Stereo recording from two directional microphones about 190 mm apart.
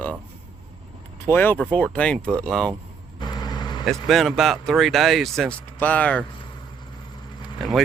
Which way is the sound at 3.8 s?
Centre (ahead or behind).